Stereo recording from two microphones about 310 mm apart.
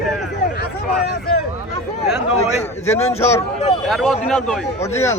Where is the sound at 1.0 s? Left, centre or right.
Left.